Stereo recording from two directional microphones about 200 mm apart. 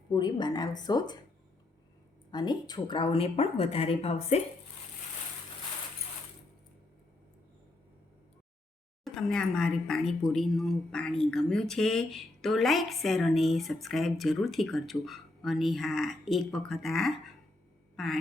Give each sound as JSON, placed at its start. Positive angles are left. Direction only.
{"t": 0.1, "sound": "speech", "side_deg": 20}
{"t": 2.3, "sound": "speech", "side_deg": 20}
{"t": 9.0, "sound": "speech", "side_deg": 0}
{"t": 17.9, "sound": "quack", "side_deg": 0}